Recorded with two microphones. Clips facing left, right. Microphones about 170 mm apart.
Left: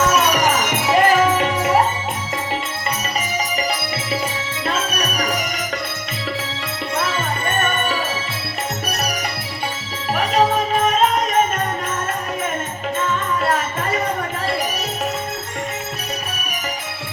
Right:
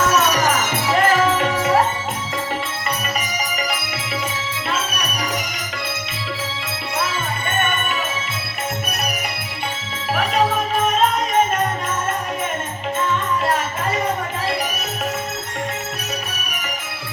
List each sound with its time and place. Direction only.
0.7 s music: 15° left (ahead or behind)